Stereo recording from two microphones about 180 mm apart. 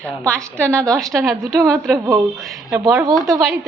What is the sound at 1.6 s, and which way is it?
Speech, 15° right (ahead or behind).